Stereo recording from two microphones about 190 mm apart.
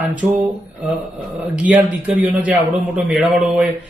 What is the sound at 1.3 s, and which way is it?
A man's voice, 10° right (ahead or behind).